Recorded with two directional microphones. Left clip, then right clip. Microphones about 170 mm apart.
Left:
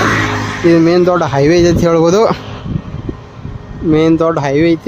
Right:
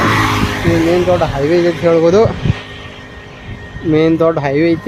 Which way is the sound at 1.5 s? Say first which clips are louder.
Left 1 dB; 40° left (ahead or behind).